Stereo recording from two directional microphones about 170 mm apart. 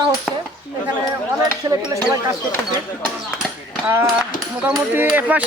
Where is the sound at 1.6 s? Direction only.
20° right (ahead or behind).